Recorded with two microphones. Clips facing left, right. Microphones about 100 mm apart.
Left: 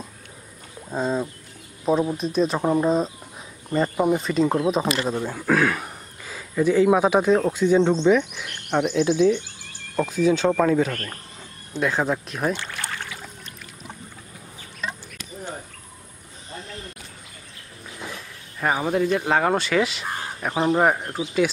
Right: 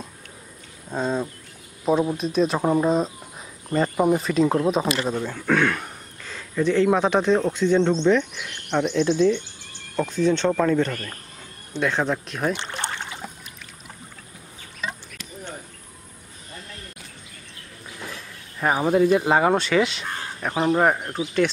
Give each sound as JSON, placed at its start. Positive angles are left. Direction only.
{"t": 0.8, "sound": "speech", "side_deg": 0}
{"t": 12.5, "sound": "a sound", "side_deg": -25}
{"t": 18.6, "sound": "speech", "side_deg": -5}